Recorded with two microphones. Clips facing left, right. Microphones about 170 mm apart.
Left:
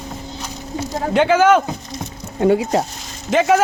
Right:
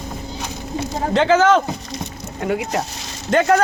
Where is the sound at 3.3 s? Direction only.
5° left (ahead or behind).